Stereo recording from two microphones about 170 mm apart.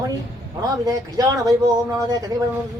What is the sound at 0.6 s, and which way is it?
Speech, 20° right (ahead or behind).